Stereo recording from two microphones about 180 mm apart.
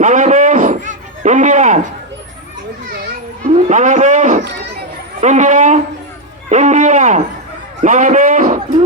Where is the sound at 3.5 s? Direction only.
40° right (ahead or behind).